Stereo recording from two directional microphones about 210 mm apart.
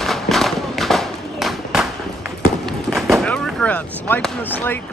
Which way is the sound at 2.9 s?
Centre (ahead or behind).